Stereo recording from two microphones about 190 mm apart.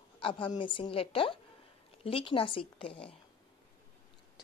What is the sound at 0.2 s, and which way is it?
A woman's voice, 25° left (ahead or behind).